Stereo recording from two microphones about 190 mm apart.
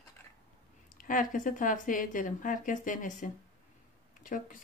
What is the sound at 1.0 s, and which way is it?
Speech, 45° left (ahead or behind).